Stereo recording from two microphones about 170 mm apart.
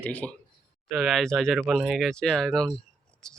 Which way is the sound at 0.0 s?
10° left (ahead or behind).